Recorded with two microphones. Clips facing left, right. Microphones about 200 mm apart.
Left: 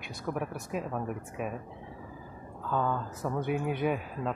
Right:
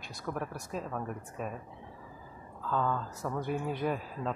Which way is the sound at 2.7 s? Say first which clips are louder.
Left 1 dB; 10° left (ahead or behind).